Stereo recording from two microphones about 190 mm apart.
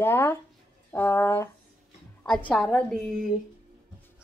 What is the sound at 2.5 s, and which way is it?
Speech, 5° left (ahead or behind).